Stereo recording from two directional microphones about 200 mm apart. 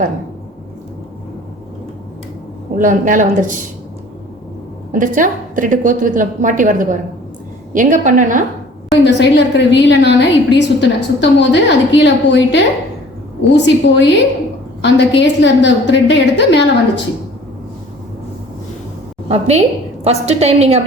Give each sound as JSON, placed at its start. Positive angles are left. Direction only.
{"t": 2.7, "sound": "a woman's voice", "side_deg": -40}
{"t": 4.9, "sound": "a woman's voice", "side_deg": -40}
{"t": 9.0, "sound": "a woman's voice", "side_deg": 60}
{"t": 19.3, "sound": "a woman's voice", "side_deg": -35}